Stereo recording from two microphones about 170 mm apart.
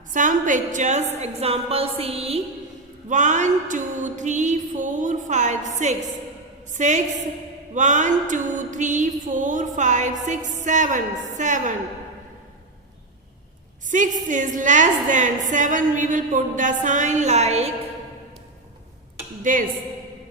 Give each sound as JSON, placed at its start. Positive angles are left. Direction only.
{"t": 0.1, "sound": "a woman's voice", "side_deg": -50}
{"t": 3.1, "sound": "a woman's voice", "side_deg": -45}
{"t": 13.8, "sound": "a woman's voice", "side_deg": -50}
{"t": 19.4, "sound": "a woman's voice", "side_deg": -50}